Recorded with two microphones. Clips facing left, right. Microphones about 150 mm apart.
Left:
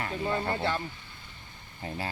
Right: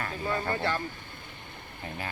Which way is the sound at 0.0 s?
25° left (ahead or behind).